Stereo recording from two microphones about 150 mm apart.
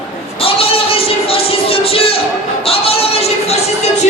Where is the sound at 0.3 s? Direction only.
40° left (ahead or behind).